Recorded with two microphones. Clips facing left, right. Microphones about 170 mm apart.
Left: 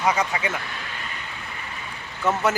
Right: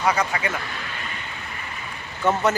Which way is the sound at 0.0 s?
20° left (ahead or behind).